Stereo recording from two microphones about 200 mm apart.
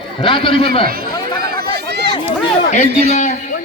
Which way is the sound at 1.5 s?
55° right (ahead or behind).